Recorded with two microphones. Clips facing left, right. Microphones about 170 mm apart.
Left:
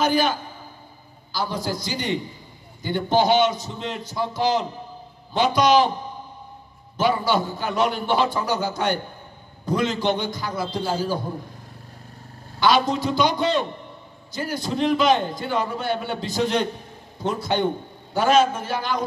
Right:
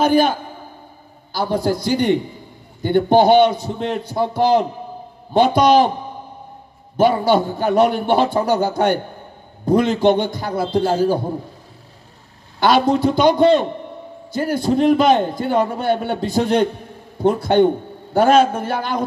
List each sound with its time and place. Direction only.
0.0 s a man's voice: 55° right (ahead or behind)
7.0 s a man's voice: 55° right (ahead or behind)
12.5 s a man's voice: 55° right (ahead or behind)